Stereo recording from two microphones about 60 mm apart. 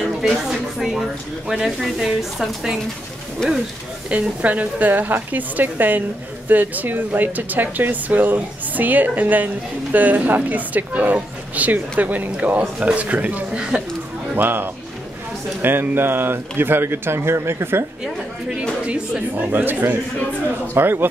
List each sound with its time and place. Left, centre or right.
0.0 s a sound: centre
1.5 s a woman's voice: centre
4.1 s speech: right
13.6 s speech: centre
14.3 s speech: right
18.6 s speech: right